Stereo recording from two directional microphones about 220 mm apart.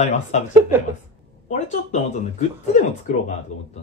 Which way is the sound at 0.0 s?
30° left (ahead or behind).